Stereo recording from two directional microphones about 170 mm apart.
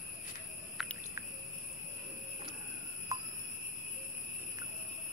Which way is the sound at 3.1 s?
20° right (ahead or behind).